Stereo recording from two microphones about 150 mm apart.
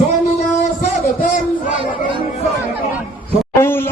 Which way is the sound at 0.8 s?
60° left (ahead or behind).